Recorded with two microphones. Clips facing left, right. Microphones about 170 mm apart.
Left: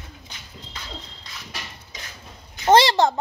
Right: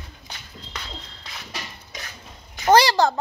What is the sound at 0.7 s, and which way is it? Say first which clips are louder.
Horse: right 3 dB; 75° right (ahead or behind).